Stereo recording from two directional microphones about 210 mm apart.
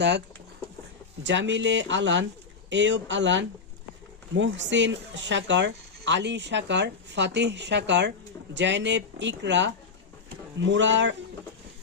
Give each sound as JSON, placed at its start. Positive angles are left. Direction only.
{"t": 1.2, "sound": "speech", "side_deg": -60}